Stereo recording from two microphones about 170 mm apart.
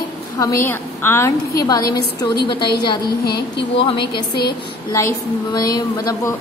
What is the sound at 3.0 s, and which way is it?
Speech, 70° left (ahead or behind).